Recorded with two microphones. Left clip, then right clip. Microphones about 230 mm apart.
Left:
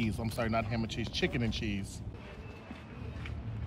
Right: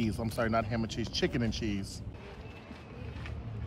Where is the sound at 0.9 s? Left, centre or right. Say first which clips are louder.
Right 1 dB; centre.